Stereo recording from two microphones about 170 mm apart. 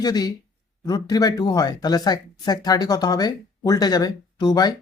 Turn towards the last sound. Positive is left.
turn(degrees=25)  # may be behind; listen again after turning